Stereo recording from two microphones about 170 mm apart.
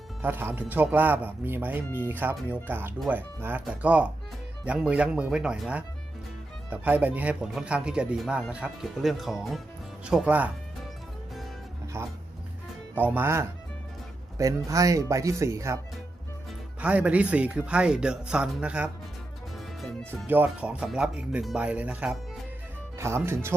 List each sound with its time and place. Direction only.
0.2 s speech: 10° right (ahead or behind)
11.9 s speech: 15° right (ahead or behind)
16.8 s speech: 10° right (ahead or behind)
19.5 s music: centre (ahead or behind)
20.2 s speech: 10° right (ahead or behind)